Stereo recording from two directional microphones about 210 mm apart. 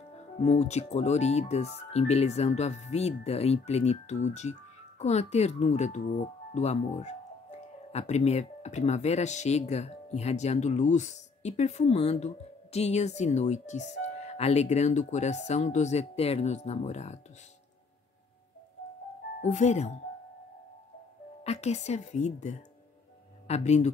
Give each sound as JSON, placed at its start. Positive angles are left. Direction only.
{"t": 0.4, "sound": "speech", "side_deg": 30}
{"t": 19.4, "sound": "speech", "side_deg": 35}
{"t": 21.5, "sound": "speech", "side_deg": 30}